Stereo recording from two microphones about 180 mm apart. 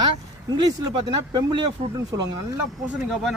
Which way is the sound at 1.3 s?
30° right (ahead or behind).